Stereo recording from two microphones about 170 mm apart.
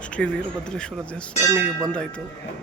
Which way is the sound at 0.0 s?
5° left (ahead or behind).